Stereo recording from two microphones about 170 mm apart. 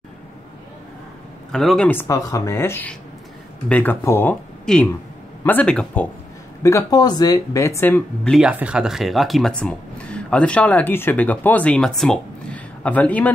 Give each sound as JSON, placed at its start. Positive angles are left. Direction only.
{"t": 1.5, "sound": "speech", "side_deg": 5}
{"t": 6.6, "sound": "speech", "side_deg": 20}
{"t": 8.5, "sound": "speech", "side_deg": -5}